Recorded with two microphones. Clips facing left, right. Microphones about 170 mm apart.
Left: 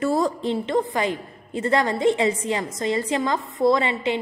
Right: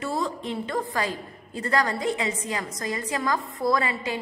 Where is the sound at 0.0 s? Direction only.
50° left (ahead or behind).